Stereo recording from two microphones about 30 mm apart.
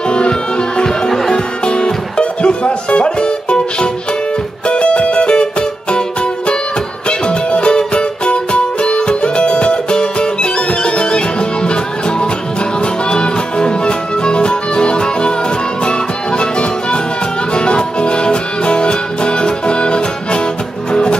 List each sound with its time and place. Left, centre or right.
0.1 s music: left
0.8 s music: centre
1.3 s music: left